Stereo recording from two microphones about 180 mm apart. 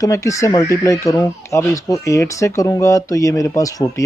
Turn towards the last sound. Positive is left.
turn(degrees=20)  # may be behind; listen again after turning